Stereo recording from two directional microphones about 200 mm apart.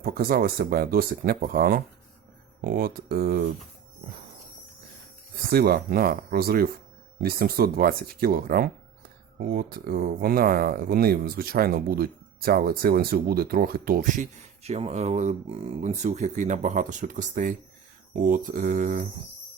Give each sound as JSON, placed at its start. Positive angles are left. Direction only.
{"t": 0.0, "sound": "speech", "side_deg": -45}
{"t": 5.5, "sound": "speech", "side_deg": -50}
{"t": 18.2, "sound": "mantra", "side_deg": -40}